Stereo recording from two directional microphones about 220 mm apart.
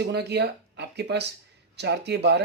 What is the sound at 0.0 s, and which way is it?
Speech, 50° right (ahead or behind).